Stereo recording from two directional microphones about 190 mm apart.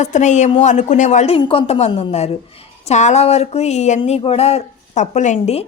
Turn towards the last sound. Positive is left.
turn(degrees=35)  # may be behind; listen again after turning